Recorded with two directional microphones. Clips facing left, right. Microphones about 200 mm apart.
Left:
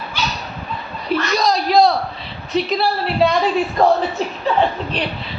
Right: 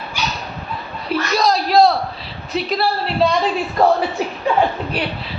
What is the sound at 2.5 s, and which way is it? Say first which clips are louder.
Speech: left 1 dB; centre (ahead or behind).